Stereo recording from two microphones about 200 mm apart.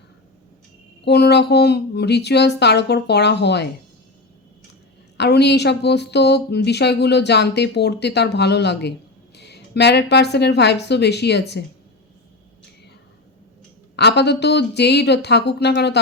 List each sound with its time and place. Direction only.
1.0 s a woman's voice: 55° left (ahead or behind)
5.1 s a woman's voice: 55° left (ahead or behind)
13.9 s a woman's voice: 60° left (ahead or behind)